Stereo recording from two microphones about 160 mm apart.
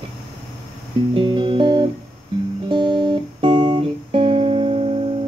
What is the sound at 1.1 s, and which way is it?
Music, 30° right (ahead or behind).